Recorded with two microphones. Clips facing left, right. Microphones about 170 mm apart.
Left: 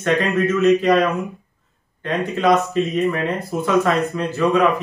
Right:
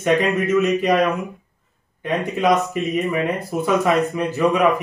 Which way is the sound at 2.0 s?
15° right (ahead or behind).